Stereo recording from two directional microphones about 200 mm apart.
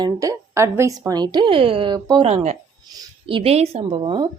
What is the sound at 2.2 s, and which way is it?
Speech, 35° right (ahead or behind).